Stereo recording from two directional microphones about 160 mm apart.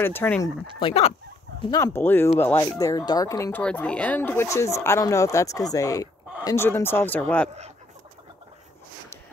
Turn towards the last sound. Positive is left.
turn(degrees=10)  # may be behind; listen again after turning